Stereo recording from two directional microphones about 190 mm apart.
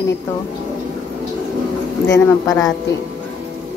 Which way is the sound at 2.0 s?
20° left (ahead or behind).